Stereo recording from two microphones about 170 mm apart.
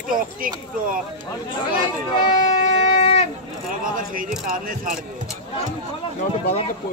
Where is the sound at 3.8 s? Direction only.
55° right (ahead or behind).